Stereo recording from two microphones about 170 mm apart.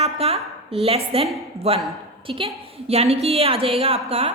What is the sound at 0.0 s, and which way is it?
A woman's voice, 35° right (ahead or behind).